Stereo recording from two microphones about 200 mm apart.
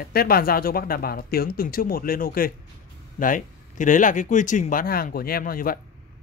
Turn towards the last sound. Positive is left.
turn(degrees=45)  # may be behind; listen again after turning